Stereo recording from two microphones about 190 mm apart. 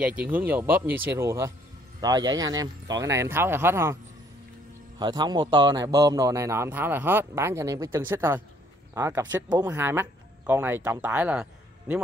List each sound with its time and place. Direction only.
0.0 s a man's voice: 10° right (ahead or behind)